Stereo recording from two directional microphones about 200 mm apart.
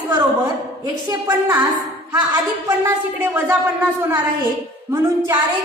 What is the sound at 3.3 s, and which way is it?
A woman's voice, 10° right (ahead or behind).